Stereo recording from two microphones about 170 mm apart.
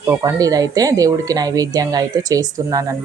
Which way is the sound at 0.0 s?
20° right (ahead or behind).